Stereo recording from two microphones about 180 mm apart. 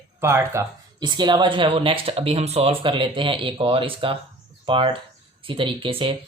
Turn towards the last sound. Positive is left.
turn(degrees=-30)  # may be behind; listen again after turning